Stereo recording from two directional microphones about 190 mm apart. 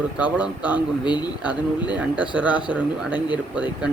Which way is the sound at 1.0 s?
25° left (ahead or behind).